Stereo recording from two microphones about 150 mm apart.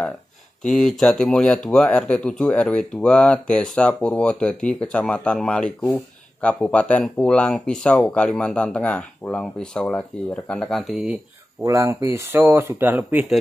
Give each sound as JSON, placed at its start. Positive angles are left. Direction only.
{"t": 0.7, "sound": "speech", "side_deg": 0}
{"t": 11.6, "sound": "speech", "side_deg": -20}